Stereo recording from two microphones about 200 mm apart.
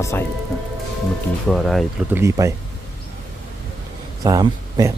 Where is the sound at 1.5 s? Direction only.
Centre (ahead or behind).